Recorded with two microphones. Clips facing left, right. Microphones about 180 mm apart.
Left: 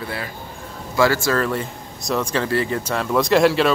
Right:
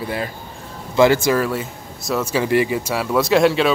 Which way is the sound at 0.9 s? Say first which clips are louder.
Right 4 dB; 20° right (ahead or behind).